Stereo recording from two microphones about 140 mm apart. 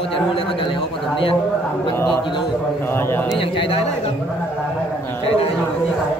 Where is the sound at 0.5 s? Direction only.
40° left (ahead or behind).